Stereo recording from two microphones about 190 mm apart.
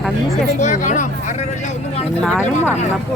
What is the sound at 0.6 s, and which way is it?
Speech, 40° left (ahead or behind).